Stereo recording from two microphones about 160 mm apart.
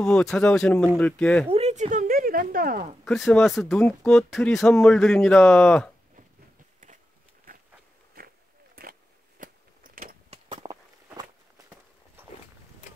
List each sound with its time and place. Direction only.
0.0 s speech: 5° left (ahead or behind)
1.5 s speech: 40° right (ahead or behind); by 2.9 s 65° right (ahead or behind)
3.1 s speech: centre (ahead or behind)
8.2 s walk: 70° right (ahead or behind)
8.8 s a sound: 65° right (ahead or behind)
10.3 s a sound: 30° right (ahead or behind)